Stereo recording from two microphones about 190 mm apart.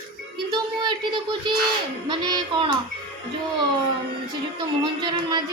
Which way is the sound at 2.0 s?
25° right (ahead or behind).